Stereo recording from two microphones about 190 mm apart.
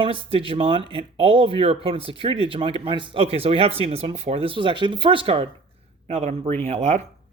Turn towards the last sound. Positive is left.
turn(degrees=-35)  # may be behind; listen again after turning